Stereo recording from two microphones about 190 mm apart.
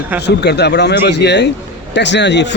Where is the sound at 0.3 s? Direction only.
65° left (ahead or behind).